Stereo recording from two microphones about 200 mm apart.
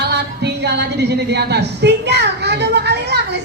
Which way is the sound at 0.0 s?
55° right (ahead or behind).